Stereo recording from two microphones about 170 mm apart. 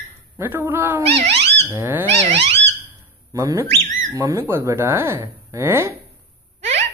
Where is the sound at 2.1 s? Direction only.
40° right (ahead or behind).